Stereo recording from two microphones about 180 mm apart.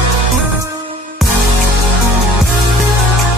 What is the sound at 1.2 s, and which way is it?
Music, centre (ahead or behind).